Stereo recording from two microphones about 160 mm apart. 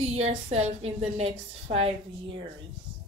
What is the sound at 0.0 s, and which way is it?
A woman's voice, 40° right (ahead or behind).